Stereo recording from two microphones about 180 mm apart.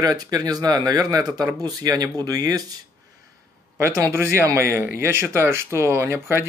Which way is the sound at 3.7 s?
15° right (ahead or behind).